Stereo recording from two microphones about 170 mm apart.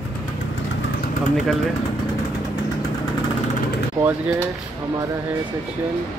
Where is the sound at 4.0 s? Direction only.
20° right (ahead or behind).